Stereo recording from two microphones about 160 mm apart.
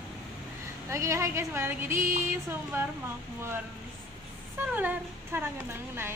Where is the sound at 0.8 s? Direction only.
20° right (ahead or behind).